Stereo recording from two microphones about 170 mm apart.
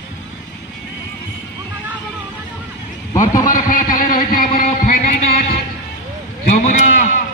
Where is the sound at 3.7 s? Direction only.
55° left (ahead or behind).